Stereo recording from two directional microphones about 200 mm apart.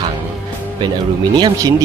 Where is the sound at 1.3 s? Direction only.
20° right (ahead or behind).